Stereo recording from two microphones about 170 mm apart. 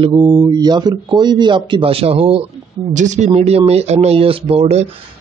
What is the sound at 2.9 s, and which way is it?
Speech, 45° right (ahead or behind).